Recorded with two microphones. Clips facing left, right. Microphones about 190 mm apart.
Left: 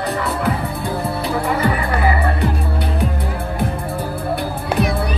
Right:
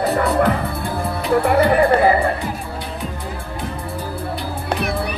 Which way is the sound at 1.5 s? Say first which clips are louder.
Right 6 dB; 50° right (ahead or behind).